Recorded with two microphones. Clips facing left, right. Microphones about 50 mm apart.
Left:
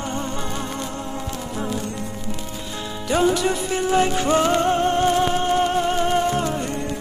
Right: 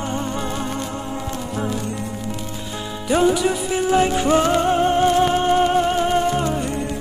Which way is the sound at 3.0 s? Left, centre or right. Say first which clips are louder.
Right 2 dB; centre.